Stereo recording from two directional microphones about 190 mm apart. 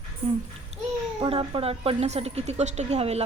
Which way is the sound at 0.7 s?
35° right (ahead or behind).